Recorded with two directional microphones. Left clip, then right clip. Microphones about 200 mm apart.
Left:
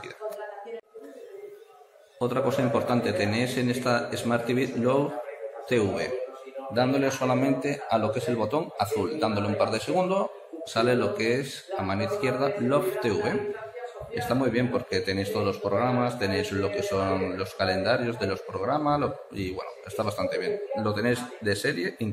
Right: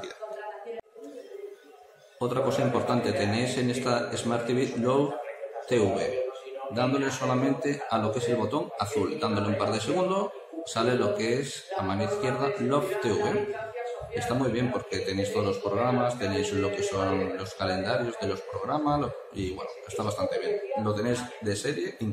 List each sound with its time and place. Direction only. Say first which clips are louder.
2.1 s a man's voice: left 1 dB; 25° left (ahead or behind)
14.3 s a man's voice: left 3 dB; 25° left (ahead or behind)